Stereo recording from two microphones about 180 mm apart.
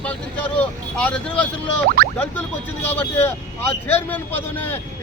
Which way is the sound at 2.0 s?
55° right (ahead or behind).